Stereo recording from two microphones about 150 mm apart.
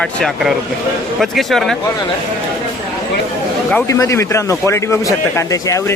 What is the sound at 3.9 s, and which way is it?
A man's voice, 20° left (ahead or behind).